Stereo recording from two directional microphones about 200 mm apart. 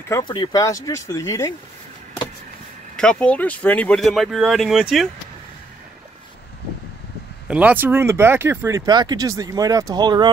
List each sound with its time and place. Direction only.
0.1 s speech: 20° left (ahead or behind)
3.0 s speech: 5° left (ahead or behind)
7.4 s speech: 5° right (ahead or behind)